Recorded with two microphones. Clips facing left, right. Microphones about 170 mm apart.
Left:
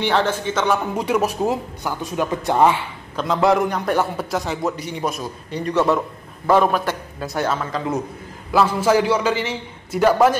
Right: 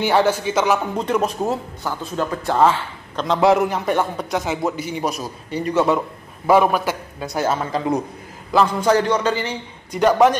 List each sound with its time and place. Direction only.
0.0 s a man's voice: 10° right (ahead or behind)
0.9 s speech: 10° left (ahead or behind)
3.3 s a man's voice: centre (ahead or behind)
7.4 s speech: 30° right (ahead or behind)
8.5 s a man's voice: 5° left (ahead or behind)